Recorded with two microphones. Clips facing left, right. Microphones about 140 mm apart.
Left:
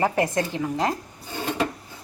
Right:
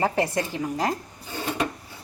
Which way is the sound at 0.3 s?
20° left (ahead or behind).